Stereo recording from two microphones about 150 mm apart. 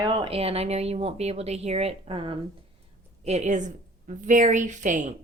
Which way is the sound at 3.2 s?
50° right (ahead or behind).